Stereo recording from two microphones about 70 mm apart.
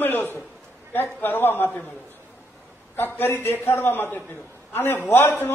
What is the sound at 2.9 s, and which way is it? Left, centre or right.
A man's voice, left.